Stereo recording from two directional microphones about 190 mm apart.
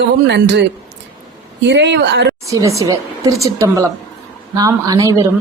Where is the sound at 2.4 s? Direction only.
15° right (ahead or behind).